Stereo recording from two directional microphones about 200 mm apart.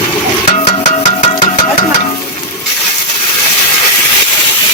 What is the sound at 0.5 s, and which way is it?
Music, 35° left (ahead or behind).